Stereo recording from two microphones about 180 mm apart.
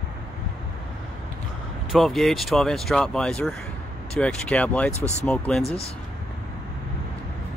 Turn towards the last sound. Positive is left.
turn(degrees=35)  # may be behind; listen again after turning